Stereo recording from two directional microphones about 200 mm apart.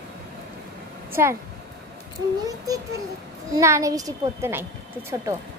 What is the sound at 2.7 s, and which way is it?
A child's voice, 15° right (ahead or behind).